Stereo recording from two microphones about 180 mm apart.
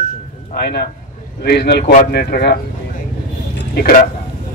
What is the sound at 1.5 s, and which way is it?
Speech, 65° left (ahead or behind).